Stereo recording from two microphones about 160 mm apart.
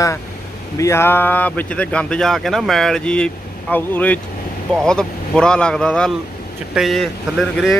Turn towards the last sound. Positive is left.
turn(degrees=0)  # may be behind; listen again after turning